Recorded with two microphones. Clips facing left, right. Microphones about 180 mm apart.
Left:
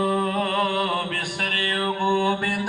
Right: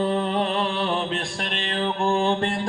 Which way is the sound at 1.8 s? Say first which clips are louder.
Right 1 dB; 25° right (ahead or behind).